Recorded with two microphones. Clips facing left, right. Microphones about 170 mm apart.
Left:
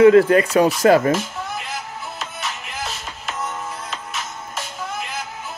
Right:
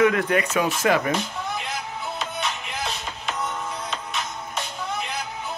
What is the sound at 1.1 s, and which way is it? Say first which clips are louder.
Music: left 3 dB; centre (ahead or behind).